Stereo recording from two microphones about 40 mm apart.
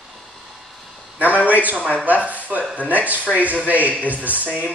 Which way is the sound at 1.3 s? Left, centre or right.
Left.